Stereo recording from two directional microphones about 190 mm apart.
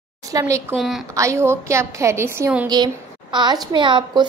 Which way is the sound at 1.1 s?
15° right (ahead or behind).